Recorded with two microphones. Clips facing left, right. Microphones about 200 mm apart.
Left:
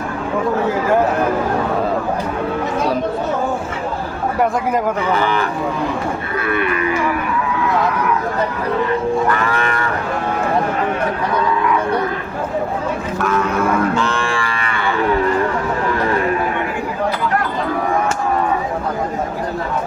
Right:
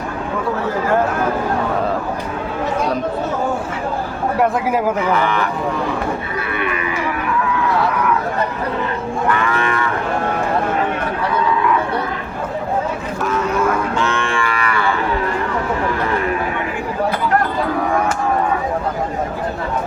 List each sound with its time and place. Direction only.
14.0 s livestock: 35° left (ahead or behind)